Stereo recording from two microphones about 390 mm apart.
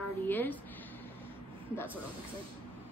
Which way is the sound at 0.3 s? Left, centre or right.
Centre.